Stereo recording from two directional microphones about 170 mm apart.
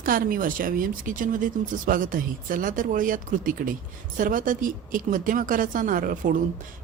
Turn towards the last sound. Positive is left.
turn(degrees=-50)  # may be behind; listen again after turning